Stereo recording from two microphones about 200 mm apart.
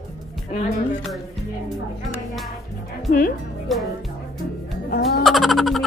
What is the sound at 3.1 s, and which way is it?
Music, 45° left (ahead or behind).